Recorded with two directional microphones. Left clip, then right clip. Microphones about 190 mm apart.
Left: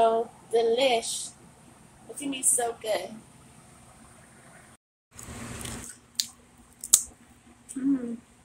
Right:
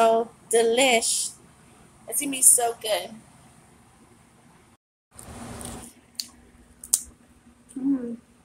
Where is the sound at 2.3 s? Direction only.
35° right (ahead or behind).